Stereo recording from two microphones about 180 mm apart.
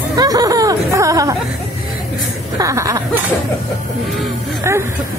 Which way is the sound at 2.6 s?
15° right (ahead or behind).